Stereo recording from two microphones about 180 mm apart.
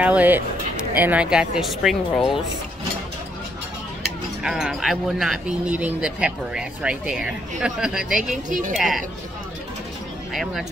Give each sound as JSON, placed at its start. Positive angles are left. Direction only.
{"t": 0.0, "sound": "speech", "side_deg": -10}
{"t": 4.4, "sound": "speech", "side_deg": -5}
{"t": 8.5, "sound": "a woman's voice", "side_deg": -45}
{"t": 8.7, "sound": "speech", "side_deg": 0}
{"t": 10.3, "sound": "speech", "side_deg": 0}